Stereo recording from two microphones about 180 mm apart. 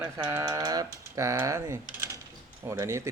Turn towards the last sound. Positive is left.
turn(degrees=-15)  # may be behind; listen again after turning